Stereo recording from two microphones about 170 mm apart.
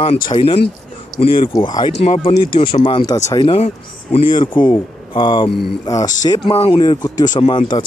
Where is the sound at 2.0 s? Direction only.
40° left (ahead or behind).